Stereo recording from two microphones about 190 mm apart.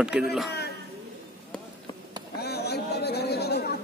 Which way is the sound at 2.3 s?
60° left (ahead or behind).